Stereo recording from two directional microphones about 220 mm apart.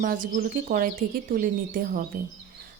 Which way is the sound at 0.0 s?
40° right (ahead or behind).